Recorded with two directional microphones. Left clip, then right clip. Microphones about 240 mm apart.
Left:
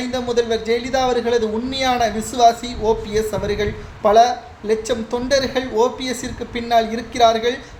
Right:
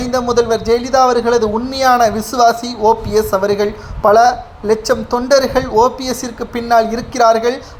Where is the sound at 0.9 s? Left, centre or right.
Centre.